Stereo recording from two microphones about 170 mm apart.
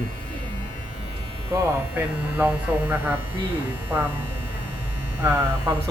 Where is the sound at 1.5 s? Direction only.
10° right (ahead or behind).